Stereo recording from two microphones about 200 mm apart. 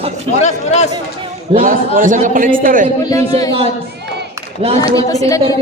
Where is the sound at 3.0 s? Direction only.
20° left (ahead or behind).